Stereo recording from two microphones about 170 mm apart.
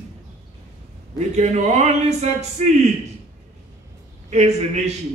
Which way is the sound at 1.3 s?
40° right (ahead or behind).